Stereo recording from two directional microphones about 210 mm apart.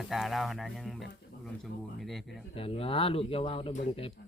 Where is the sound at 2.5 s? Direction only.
25° left (ahead or behind).